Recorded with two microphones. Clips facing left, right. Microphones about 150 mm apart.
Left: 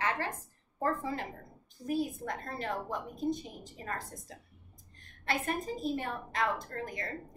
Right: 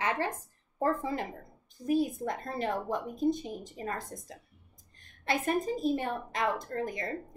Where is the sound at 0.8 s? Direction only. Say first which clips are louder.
Right 3 dB; 15° right (ahead or behind).